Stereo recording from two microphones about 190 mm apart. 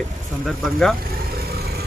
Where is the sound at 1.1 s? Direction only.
55° right (ahead or behind).